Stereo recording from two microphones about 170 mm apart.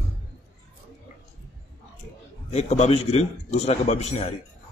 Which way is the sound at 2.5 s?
40° left (ahead or behind).